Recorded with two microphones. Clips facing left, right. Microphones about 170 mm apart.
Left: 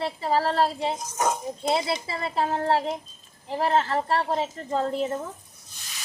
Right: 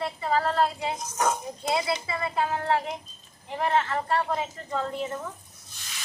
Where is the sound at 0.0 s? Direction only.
30° left (ahead or behind).